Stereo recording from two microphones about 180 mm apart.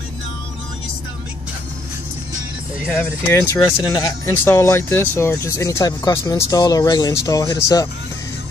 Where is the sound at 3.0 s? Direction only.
15° left (ahead or behind).